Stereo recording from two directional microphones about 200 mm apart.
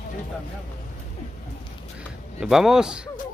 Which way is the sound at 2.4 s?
Centre (ahead or behind).